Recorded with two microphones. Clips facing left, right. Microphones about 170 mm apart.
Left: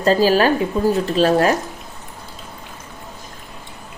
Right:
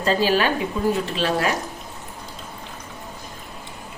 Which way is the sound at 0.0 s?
40° left (ahead or behind).